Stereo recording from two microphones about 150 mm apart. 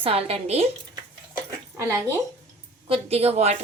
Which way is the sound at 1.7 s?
15° right (ahead or behind).